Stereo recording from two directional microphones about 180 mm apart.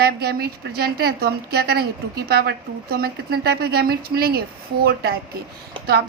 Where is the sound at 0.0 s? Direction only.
60° right (ahead or behind).